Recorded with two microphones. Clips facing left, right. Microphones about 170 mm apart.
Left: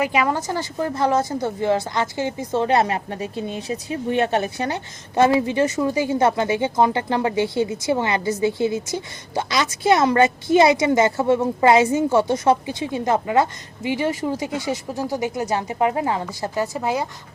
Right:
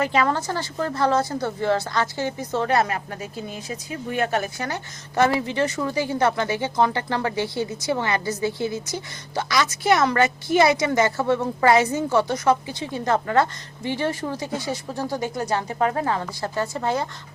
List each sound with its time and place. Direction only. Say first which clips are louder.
0.0 s a woman's voice: left 1 dB; 15° left (ahead or behind)